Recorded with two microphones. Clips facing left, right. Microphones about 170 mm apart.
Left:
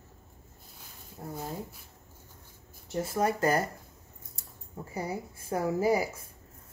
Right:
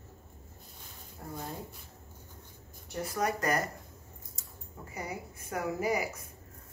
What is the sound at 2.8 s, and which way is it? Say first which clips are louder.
Speech: left 4 dB; 25° left (ahead or behind).